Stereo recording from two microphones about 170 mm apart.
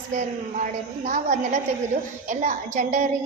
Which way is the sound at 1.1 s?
45° right (ahead or behind).